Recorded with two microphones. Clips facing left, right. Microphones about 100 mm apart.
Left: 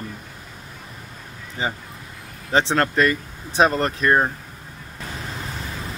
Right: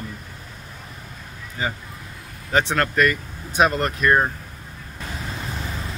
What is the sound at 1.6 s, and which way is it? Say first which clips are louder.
Speech: left 1 dB; 25° left (ahead or behind).